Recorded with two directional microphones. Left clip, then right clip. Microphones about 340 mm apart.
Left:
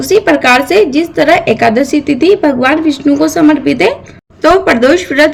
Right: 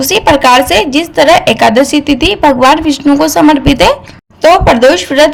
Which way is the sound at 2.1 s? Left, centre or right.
Right.